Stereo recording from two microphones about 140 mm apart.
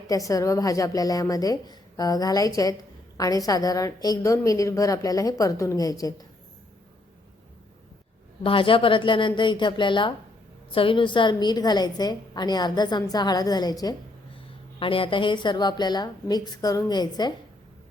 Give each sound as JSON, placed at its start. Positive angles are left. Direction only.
{"t": 0.1, "sound": "a woman's voice", "side_deg": 25}
{"t": 8.4, "sound": "a woman's voice", "side_deg": 40}
{"t": 14.8, "sound": "a woman's voice", "side_deg": 40}